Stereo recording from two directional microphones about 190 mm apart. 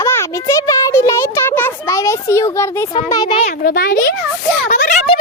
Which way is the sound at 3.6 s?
50° left (ahead or behind).